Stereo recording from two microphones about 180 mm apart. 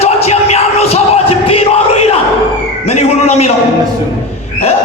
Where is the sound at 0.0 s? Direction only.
35° left (ahead or behind).